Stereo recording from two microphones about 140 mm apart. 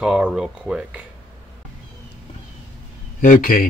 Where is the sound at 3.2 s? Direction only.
80° left.